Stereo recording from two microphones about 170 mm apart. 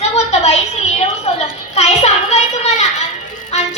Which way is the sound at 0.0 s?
40° left (ahead or behind).